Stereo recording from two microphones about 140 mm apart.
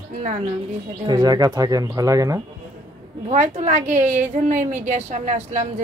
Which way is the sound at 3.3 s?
60° right (ahead or behind).